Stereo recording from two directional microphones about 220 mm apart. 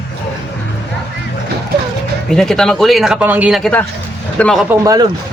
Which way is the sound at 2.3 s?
Centre (ahead or behind).